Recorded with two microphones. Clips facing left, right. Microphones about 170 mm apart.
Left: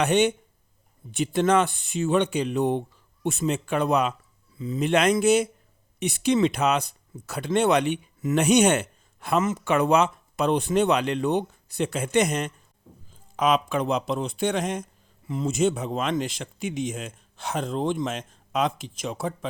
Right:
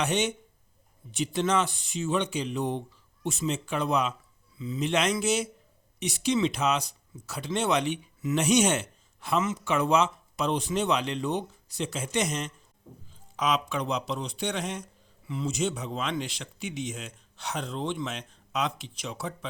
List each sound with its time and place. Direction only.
0.0 s speech: 55° left (ahead or behind)